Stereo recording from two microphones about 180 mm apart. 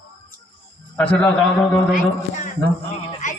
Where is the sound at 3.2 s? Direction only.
45° left (ahead or behind).